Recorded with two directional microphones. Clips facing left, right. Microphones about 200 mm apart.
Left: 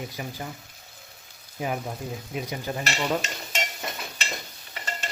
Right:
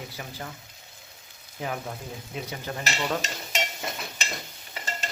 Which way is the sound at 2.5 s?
10° left (ahead or behind).